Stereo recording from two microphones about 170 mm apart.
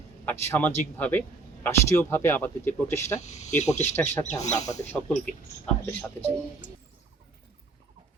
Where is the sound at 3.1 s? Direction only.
40° left (ahead or behind).